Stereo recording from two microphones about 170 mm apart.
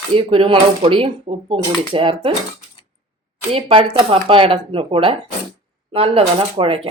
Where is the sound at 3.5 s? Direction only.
35° right (ahead or behind).